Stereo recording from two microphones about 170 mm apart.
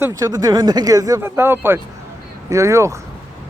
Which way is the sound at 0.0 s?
20° right (ahead or behind).